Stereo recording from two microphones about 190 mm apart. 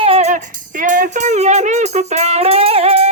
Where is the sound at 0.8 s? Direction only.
45° right (ahead or behind).